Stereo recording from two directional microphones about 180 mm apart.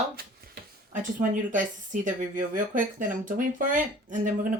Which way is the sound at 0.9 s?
45° right (ahead or behind).